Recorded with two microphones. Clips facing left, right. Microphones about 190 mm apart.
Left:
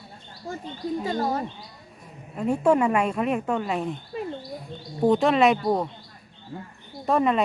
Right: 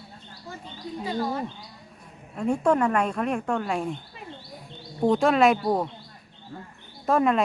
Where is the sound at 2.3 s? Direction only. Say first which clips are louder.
Left 2 dB; 5° left (ahead or behind).